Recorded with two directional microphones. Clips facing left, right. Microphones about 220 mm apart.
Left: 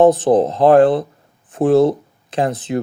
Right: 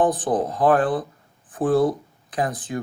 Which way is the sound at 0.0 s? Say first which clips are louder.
Left 9 dB; 25° left (ahead or behind).